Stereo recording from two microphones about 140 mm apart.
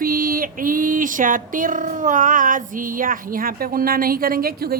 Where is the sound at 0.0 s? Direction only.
90° right.